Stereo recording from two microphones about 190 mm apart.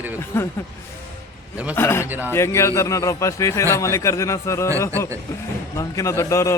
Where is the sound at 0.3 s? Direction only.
10° left (ahead or behind).